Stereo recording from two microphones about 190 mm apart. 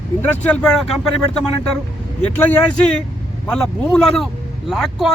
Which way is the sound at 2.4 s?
5° left (ahead or behind).